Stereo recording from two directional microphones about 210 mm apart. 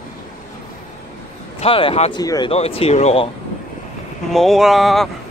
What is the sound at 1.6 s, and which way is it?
Speech, 25° left (ahead or behind).